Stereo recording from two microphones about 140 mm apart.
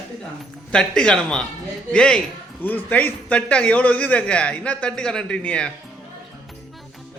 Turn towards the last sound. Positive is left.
turn(degrees=5)  # may be behind; listen again after turning